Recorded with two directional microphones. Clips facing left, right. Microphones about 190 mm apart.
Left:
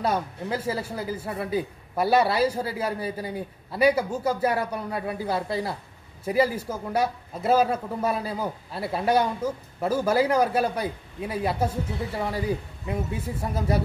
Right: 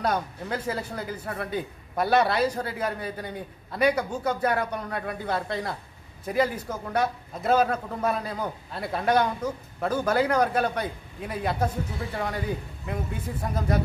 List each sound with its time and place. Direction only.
0.0 s a man's voice: 5° left (ahead or behind)